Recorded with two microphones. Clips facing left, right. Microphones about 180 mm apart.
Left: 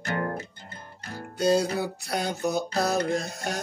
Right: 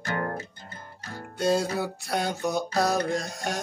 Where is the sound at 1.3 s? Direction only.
Centre (ahead or behind).